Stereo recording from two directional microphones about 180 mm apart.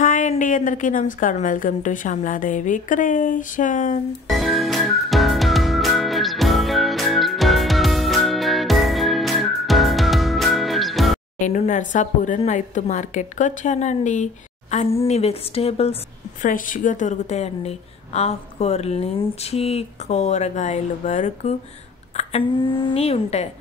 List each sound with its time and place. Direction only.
0.0 s a woman's voice: 45° left (ahead or behind)
4.3 s music: centre (ahead or behind)
11.3 s a woman's voice: 45° left (ahead or behind)
16.4 s a woman's voice: 50° left (ahead or behind)